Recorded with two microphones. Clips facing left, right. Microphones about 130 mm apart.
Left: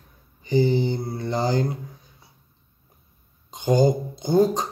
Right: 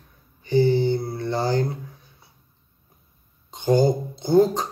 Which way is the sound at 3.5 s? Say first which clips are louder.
Even; 15° left (ahead or behind).